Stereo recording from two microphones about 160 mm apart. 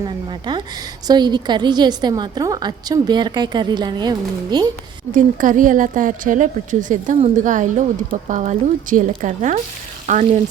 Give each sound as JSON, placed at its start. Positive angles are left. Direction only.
{"t": 0.0, "sound": "a woman's voice", "side_deg": -25}
{"t": 5.1, "sound": "a woman's voice", "side_deg": -55}